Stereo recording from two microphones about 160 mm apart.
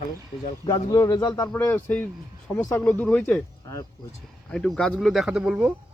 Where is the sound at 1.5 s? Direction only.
10° left (ahead or behind).